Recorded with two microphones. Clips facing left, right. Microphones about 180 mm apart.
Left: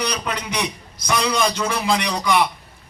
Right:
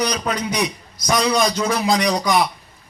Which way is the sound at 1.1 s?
30° right (ahead or behind).